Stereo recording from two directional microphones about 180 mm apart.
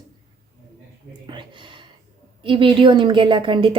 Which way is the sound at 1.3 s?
25° right (ahead or behind).